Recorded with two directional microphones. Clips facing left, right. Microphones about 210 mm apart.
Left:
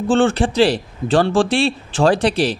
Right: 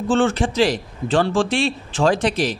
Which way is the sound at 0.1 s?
30° left (ahead or behind).